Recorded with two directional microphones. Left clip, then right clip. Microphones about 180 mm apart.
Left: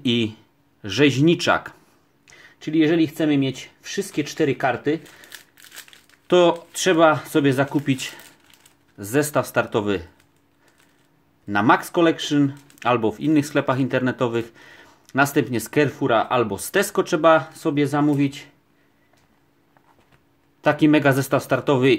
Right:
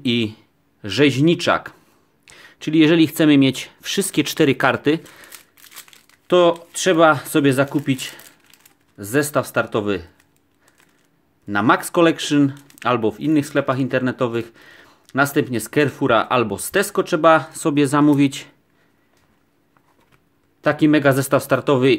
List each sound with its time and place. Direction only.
0.0 s a sound: 10° right (ahead or behind)
0.8 s speech: 15° right (ahead or behind)
2.2 s speech: 30° right (ahead or behind)
6.2 s speech: 5° right (ahead or behind)
11.4 s speech: 10° right (ahead or behind); by 18.5 s 35° right (ahead or behind)
20.6 s speech: 10° right (ahead or behind)